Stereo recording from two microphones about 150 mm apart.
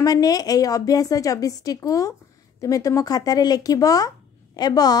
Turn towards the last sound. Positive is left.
turn(degrees=25)  # may be behind; listen again after turning